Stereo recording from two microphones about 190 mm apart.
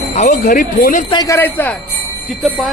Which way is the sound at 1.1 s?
20° left (ahead or behind).